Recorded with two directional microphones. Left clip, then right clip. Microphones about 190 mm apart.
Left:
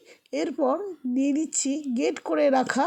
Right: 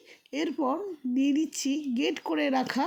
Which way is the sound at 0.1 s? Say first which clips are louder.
Left 3 dB; 20° left (ahead or behind).